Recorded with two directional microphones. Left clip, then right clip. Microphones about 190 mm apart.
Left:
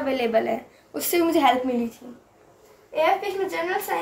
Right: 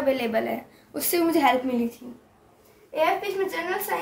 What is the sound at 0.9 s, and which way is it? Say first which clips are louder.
Speech: left 2 dB; 15° left (ahead or behind).